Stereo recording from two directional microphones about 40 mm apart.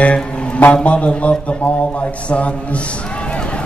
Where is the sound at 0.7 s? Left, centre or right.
Left.